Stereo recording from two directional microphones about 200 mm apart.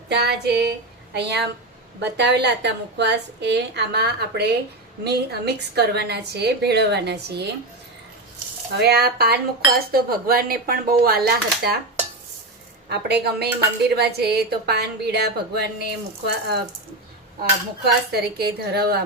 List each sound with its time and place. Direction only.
0.1 s a woman's voice: 55° right (ahead or behind)
8.7 s speech: 55° right (ahead or behind)
12.9 s a woman's voice: 55° right (ahead or behind)
17.8 s speech: 55° right (ahead or behind)